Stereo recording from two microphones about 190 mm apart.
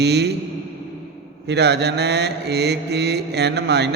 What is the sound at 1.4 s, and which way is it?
Mantra, 60° right (ahead or behind).